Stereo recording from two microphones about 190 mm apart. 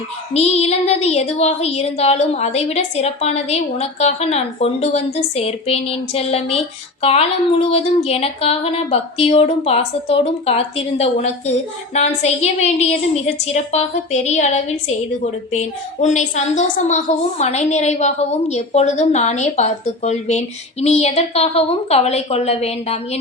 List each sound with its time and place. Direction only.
0.3 s a woman's voice: 35° left (ahead or behind)